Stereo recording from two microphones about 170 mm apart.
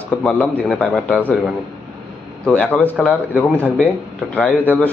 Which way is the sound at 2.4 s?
5° left (ahead or behind).